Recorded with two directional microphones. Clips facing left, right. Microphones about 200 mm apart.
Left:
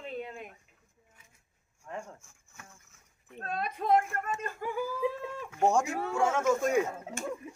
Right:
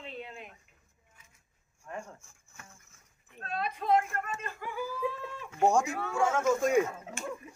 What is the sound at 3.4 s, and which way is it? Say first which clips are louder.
Speech: left 1 dB; 50° left (ahead or behind).